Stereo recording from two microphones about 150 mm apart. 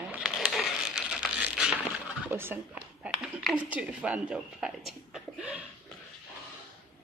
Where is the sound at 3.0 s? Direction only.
5° right (ahead or behind).